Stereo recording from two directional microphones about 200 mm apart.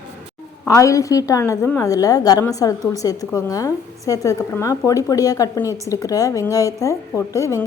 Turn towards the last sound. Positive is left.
turn(degrees=15)  # may be behind; listen again after turning